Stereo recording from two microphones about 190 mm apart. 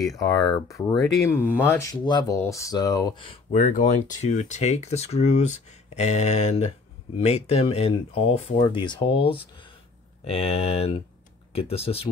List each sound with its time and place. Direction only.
0.2 s speech: 20° left (ahead or behind)
3.5 s speech: 40° left (ahead or behind)